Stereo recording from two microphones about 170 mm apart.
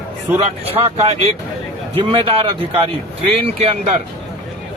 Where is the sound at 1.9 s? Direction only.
30° right (ahead or behind).